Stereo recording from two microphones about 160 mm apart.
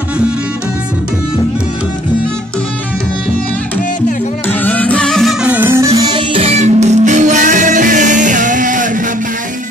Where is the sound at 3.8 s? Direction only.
55° left (ahead or behind).